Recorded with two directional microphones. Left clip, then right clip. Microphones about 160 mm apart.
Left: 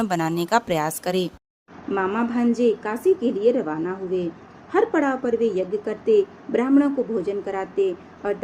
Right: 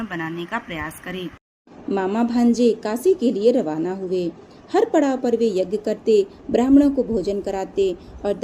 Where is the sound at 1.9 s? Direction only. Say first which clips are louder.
Right 2 dB; 30° right (ahead or behind).